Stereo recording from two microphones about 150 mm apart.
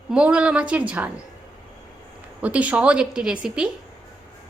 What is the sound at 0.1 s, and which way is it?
A woman's voice, 5° right (ahead or behind).